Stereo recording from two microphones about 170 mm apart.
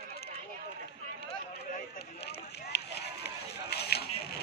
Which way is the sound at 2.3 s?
75° left (ahead or behind).